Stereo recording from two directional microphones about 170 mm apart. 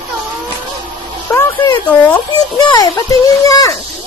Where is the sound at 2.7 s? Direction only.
20° left (ahead or behind).